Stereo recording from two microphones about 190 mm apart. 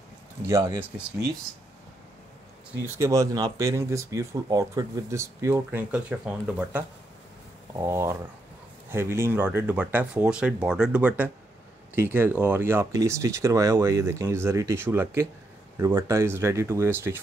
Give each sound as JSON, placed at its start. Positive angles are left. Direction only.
{"t": 0.5, "sound": "speech", "side_deg": -20}
{"t": 2.8, "sound": "speech", "side_deg": -15}